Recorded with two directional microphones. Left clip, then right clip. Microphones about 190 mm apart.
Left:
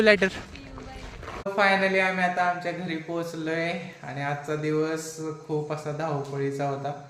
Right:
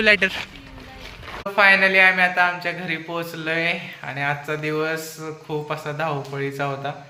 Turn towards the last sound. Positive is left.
turn(degrees=-5)  # may be behind; listen again after turning